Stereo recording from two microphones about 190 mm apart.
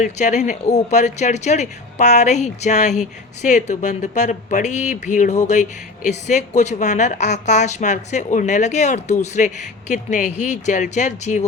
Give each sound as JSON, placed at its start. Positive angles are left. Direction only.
{"t": 0.0, "sound": "speech", "side_deg": 40}